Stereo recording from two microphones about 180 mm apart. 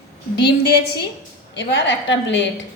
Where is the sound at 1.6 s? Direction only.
75° left (ahead or behind).